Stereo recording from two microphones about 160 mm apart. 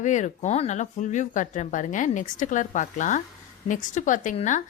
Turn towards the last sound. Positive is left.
turn(degrees=50)  # may be behind; listen again after turning